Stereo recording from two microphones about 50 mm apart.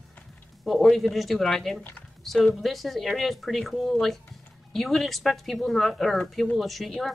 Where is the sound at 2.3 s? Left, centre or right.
Centre.